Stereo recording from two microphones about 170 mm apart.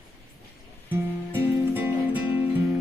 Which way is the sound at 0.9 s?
10° right (ahead or behind).